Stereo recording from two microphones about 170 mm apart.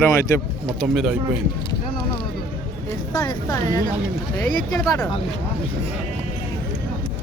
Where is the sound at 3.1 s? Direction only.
25° left (ahead or behind).